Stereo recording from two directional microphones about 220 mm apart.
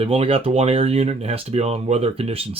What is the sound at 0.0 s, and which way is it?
Speech, 25° right (ahead or behind).